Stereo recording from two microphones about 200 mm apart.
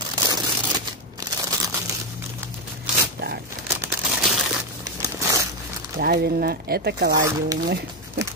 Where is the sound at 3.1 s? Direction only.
55° right (ahead or behind).